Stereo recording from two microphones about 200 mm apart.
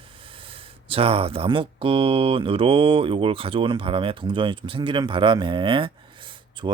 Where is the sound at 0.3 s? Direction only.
25° right (ahead or behind).